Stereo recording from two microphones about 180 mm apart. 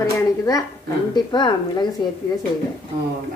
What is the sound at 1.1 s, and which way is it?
Speech, 25° left (ahead or behind).